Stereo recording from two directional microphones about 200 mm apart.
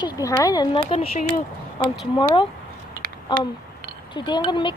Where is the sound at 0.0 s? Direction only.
20° left (ahead or behind).